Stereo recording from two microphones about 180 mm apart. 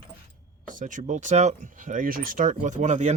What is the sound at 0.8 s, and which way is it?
Speech, 45° right (ahead or behind).